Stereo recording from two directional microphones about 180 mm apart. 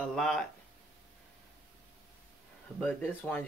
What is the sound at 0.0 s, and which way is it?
Speech, centre (ahead or behind).